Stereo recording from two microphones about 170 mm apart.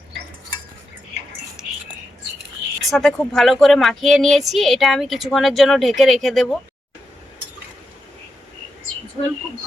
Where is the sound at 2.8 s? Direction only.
Centre (ahead or behind).